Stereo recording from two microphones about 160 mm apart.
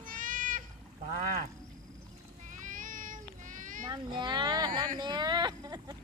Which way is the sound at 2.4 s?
55° right (ahead or behind).